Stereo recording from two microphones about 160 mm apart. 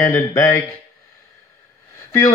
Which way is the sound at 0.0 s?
20° left (ahead or behind).